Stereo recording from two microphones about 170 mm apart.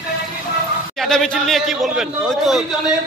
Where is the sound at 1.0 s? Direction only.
Centre (ahead or behind).